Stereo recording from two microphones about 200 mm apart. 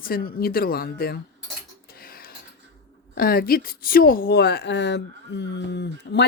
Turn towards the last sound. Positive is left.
turn(degrees=60)  # may be behind; listen again after turning